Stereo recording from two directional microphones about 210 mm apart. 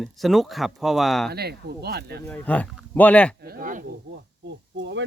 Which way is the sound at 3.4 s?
45° right (ahead or behind).